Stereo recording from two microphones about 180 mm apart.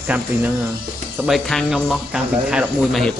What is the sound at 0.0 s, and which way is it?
Speech, 10° right (ahead or behind).